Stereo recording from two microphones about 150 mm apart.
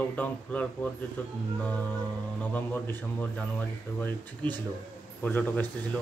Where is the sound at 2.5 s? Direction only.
15° left (ahead or behind).